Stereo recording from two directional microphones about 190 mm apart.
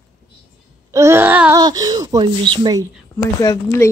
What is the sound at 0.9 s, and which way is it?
Wail, 15° right (ahead or behind).